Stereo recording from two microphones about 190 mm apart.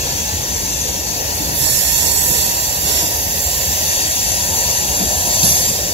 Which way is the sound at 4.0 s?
30° left (ahead or behind).